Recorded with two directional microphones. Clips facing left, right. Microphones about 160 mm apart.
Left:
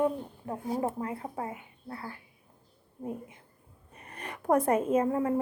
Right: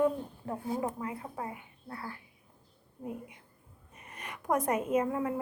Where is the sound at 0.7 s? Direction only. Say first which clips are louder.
Left 3 dB; 25° left (ahead or behind).